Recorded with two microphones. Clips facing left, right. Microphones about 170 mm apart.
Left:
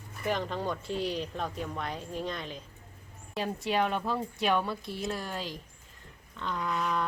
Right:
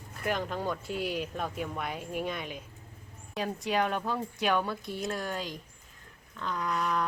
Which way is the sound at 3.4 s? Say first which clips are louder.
Even; centre (ahead or behind).